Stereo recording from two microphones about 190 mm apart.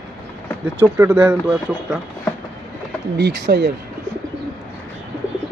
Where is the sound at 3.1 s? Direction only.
65° right (ahead or behind).